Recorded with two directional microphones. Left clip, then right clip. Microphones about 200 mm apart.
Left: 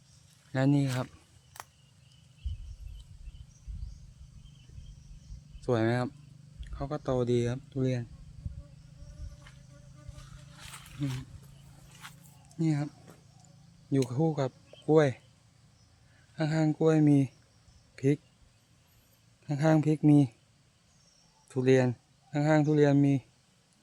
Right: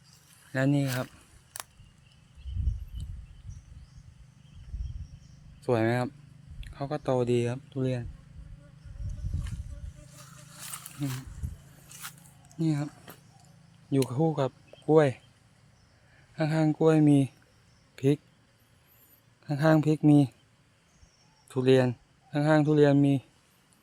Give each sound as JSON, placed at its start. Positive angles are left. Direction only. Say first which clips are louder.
{"t": 0.5, "sound": "speech", "louder": "right 1 dB", "side_deg": 5}
{"t": 1.5, "sound": "a sound", "louder": "right 3 dB", "side_deg": -60}
{"t": 5.6, "sound": "speech", "louder": "right 2 dB", "side_deg": -5}
{"t": 10.6, "sound": "a sound", "louder": "right 2 dB", "side_deg": -55}
{"t": 11.9, "sound": "biting", "louder": "right 5 dB", "side_deg": -55}
{"t": 12.5, "sound": "speech", "louder": "right 1 dB", "side_deg": 5}
{"t": 13.1, "sound": "a sound", "louder": "right 5 dB", "side_deg": -55}
{"t": 14.1, "sound": "speech", "louder": "right 3 dB", "side_deg": -5}
{"t": 16.3, "sound": "speech", "louder": "right 2 dB", "side_deg": -5}
{"t": 17.9, "sound": "a sound", "louder": "right 2 dB", "side_deg": -5}
{"t": 19.5, "sound": "speech", "louder": "right 3 dB", "side_deg": 0}
{"t": 21.5, "sound": "speech", "louder": "right 2 dB", "side_deg": 0}